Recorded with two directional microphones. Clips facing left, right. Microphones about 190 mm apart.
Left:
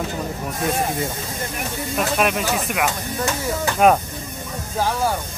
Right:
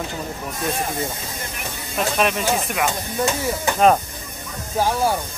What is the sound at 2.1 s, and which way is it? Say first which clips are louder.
Speech: even; 5° left (ahead or behind).